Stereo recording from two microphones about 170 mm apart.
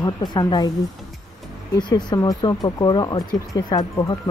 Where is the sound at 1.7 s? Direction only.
25° left (ahead or behind).